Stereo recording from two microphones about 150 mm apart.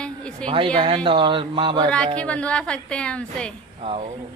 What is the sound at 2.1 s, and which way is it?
A woman's voice, 10° left (ahead or behind).